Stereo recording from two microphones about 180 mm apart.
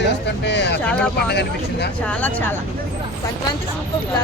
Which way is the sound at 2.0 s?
10° left (ahead or behind).